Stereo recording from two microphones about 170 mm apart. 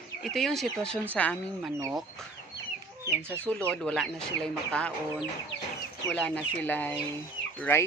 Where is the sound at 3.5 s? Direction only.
5° left (ahead or behind).